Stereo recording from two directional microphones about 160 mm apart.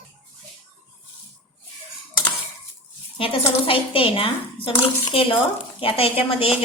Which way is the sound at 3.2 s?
35° left (ahead or behind).